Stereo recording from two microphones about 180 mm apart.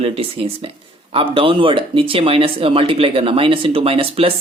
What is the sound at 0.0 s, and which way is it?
Speech, 30° right (ahead or behind).